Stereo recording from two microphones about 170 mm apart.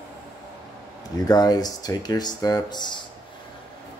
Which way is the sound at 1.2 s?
25° left (ahead or behind).